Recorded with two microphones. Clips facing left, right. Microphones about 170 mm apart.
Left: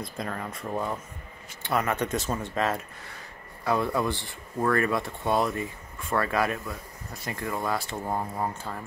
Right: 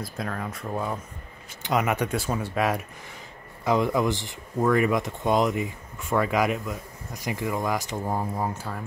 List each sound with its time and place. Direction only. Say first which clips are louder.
0.0 s speech: right 2 dB; centre (ahead or behind)
1.6 s speech: right 2 dB; 15° right (ahead or behind)